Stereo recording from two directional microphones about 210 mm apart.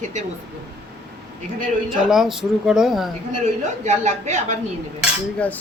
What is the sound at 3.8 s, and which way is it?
Speech, 35° right (ahead or behind).